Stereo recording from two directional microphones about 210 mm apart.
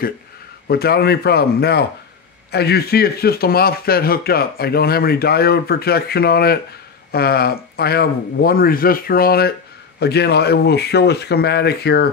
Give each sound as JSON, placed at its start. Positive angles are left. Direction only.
{"t": 0.7, "sound": "speech", "side_deg": 50}